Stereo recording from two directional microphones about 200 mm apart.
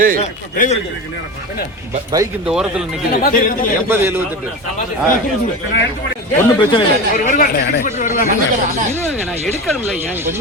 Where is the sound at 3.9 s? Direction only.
10° right (ahead or behind).